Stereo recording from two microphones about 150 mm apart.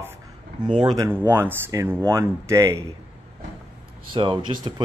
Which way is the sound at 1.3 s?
15° right (ahead or behind).